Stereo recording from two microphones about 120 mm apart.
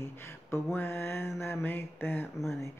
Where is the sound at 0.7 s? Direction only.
20° left (ahead or behind).